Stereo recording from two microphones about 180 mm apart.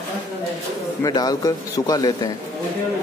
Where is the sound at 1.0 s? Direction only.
20° left (ahead or behind).